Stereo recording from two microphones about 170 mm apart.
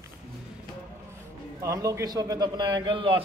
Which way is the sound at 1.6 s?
20° right (ahead or behind).